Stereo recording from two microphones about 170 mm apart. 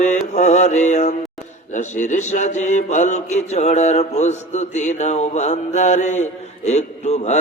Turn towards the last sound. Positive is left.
turn(degrees=40)  # may be behind; listen again after turning